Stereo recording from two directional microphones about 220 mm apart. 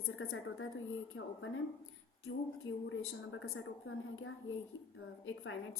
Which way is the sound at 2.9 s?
65° left (ahead or behind).